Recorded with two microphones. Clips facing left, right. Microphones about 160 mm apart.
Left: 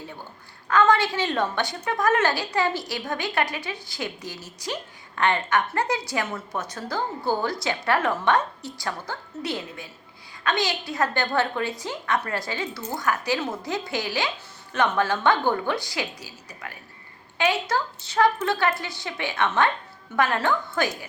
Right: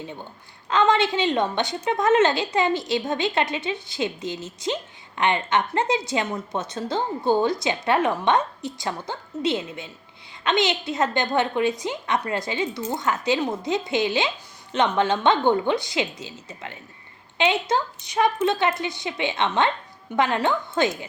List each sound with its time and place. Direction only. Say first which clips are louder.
0.7 s a woman's voice: even; 20° right (ahead or behind)